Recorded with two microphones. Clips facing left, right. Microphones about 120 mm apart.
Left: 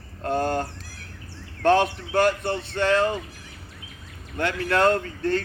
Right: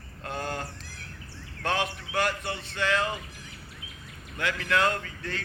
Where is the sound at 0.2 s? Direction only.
40° left (ahead or behind).